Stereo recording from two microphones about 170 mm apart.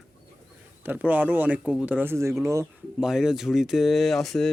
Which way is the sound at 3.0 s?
5° right (ahead or behind).